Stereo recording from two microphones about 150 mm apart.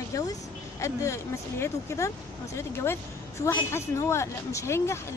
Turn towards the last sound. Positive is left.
turn(degrees=20)  # may be behind; listen again after turning